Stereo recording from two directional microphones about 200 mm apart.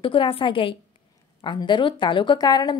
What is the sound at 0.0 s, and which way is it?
A woman's voice, 25° left (ahead or behind).